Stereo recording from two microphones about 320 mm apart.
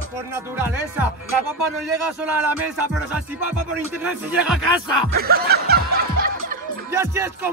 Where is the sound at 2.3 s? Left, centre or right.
Centre.